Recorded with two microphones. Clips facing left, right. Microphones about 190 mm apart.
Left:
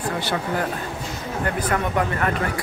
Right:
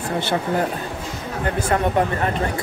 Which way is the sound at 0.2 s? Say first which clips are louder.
Right 3 dB; 25° right (ahead or behind).